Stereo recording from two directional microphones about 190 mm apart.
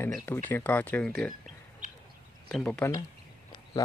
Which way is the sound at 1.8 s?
40° right (ahead or behind).